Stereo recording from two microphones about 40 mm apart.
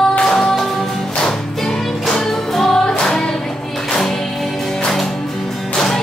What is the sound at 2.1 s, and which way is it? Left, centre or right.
Music, centre.